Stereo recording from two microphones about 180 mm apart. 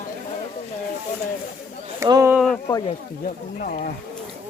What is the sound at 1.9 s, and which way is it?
Speech, 20° right (ahead or behind).